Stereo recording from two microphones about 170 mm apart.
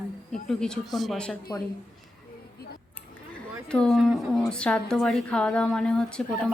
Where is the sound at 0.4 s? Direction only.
Centre (ahead or behind).